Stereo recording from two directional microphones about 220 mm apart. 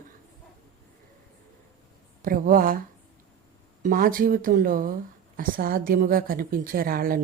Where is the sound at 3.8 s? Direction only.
40° right (ahead or behind).